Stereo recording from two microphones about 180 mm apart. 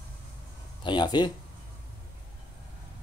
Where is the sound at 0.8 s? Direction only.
25° left (ahead or behind).